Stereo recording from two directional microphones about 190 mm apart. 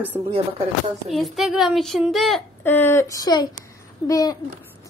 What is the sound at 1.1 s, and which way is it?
Speech, centre (ahead or behind).